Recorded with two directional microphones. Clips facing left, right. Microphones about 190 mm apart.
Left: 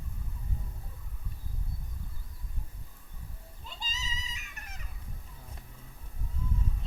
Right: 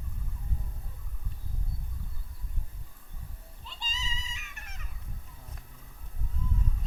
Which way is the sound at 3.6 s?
40° left (ahead or behind).